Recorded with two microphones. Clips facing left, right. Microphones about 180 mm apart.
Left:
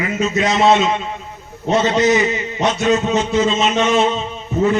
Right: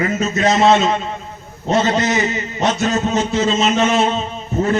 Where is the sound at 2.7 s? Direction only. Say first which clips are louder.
Left 2 dB; 40° right (ahead or behind).